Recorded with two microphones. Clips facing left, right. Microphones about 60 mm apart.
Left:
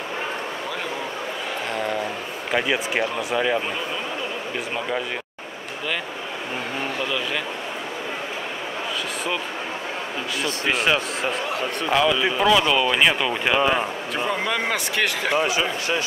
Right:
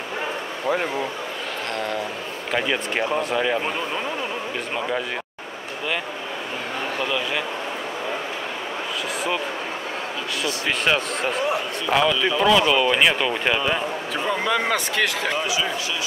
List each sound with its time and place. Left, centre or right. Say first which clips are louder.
2.5 s speech: left 1 dB; centre
10.7 s speech: left 1 dB; centre
15.4 s speech: left 2 dB; left